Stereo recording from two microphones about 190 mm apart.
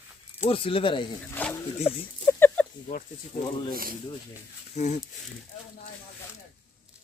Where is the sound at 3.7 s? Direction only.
50° right (ahead or behind).